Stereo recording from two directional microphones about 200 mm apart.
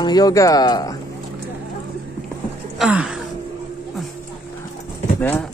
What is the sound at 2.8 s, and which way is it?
Speech, 5° right (ahead or behind).